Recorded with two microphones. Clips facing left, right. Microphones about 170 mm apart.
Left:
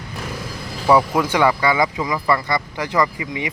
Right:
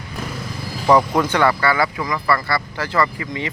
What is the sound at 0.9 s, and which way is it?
Speech, 5° left (ahead or behind).